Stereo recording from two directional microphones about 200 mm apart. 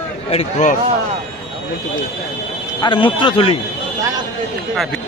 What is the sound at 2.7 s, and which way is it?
Speech, 25° left (ahead or behind).